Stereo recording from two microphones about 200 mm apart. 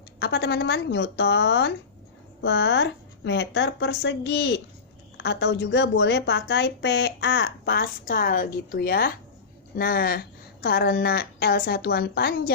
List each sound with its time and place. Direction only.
0.2 s a woman's voice: 55° left (ahead or behind)